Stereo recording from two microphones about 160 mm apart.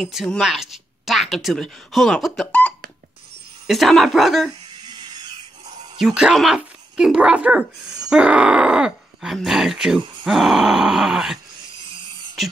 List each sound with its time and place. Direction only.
0.0 s speech: centre (ahead or behind)
4.8 s a sound: 25° right (ahead or behind)
5.9 s speech: 5° right (ahead or behind)